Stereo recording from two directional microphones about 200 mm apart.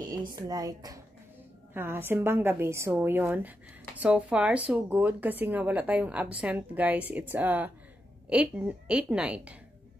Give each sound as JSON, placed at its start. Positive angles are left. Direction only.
{"t": 0.4, "sound": "a woman's voice", "side_deg": -15}